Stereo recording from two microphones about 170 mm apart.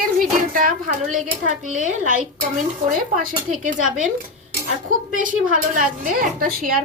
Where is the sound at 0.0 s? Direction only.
55° right (ahead or behind).